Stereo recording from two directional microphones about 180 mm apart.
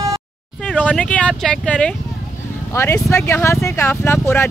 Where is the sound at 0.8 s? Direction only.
5° left (ahead or behind).